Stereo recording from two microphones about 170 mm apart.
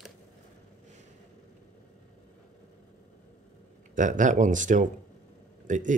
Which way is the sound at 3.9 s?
50° right (ahead or behind).